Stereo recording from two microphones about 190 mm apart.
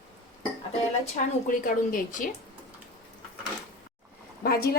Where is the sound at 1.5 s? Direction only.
45° left (ahead or behind).